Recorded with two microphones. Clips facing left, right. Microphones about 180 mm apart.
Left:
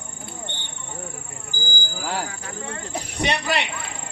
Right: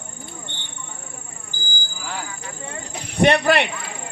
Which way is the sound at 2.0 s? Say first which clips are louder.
Left 4 dB; 40° left (ahead or behind).